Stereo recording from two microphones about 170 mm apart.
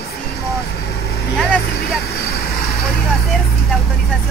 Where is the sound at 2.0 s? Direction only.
65° left (ahead or behind).